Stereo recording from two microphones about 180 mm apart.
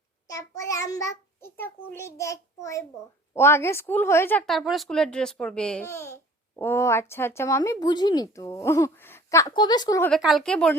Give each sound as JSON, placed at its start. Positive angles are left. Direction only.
{"t": 0.3, "sound": "speech", "side_deg": 15}
{"t": 10.1, "sound": "speech", "side_deg": 0}